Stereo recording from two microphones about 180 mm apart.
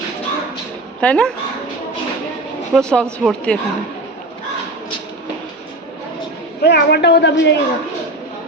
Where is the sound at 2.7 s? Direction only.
5° left (ahead or behind).